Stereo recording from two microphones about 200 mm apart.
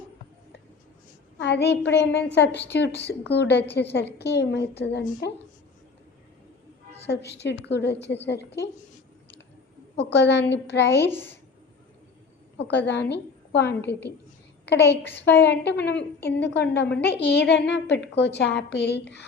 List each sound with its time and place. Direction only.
1.4 s a woman's voice: 60° left (ahead or behind)
7.1 s a woman's voice: 60° left (ahead or behind)
10.0 s a woman's voice: 60° left (ahead or behind)
11.0 s a woman's voice: 10° left (ahead or behind)
12.9 s a woman's voice: 60° left (ahead or behind)